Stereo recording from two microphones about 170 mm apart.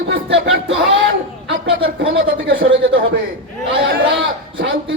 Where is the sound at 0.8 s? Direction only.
90° right.